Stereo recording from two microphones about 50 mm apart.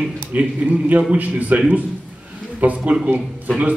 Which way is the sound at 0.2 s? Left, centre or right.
Right.